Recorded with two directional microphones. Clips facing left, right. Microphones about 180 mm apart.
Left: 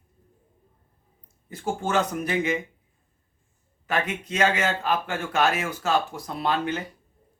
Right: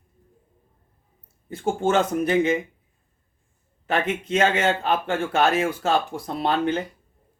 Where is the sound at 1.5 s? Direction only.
25° right (ahead or behind).